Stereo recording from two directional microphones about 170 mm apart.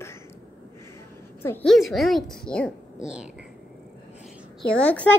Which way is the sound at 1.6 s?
Centre (ahead or behind).